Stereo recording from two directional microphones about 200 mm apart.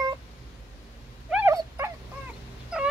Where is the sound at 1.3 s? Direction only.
10° right (ahead or behind).